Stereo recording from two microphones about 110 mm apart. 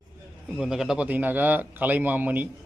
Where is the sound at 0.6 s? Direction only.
5° right (ahead or behind).